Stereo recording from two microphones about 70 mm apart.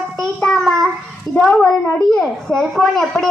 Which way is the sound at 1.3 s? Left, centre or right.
Left.